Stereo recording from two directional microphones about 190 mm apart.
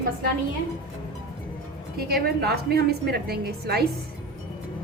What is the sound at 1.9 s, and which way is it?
A woman's voice, 55° right (ahead or behind).